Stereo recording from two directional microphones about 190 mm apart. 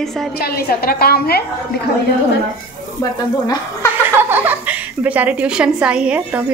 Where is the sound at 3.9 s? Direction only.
10° right (ahead or behind).